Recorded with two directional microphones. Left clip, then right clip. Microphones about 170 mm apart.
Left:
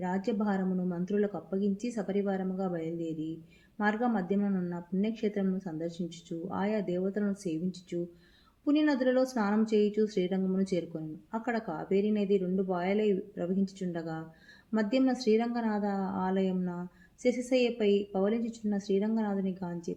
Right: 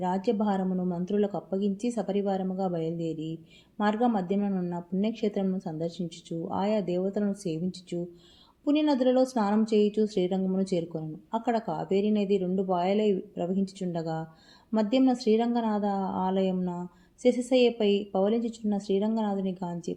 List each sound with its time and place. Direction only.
0.0 s speech: 35° right (ahead or behind)